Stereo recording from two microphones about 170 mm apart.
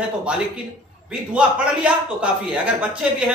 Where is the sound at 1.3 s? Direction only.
5° right (ahead or behind).